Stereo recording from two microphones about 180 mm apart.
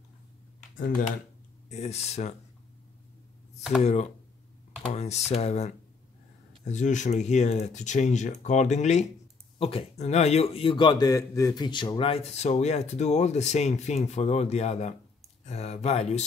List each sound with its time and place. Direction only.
0.7 s speech: 50° left (ahead or behind)
1.7 s a man's voice: 35° left (ahead or behind)
3.8 s a man's voice: 40° left (ahead or behind)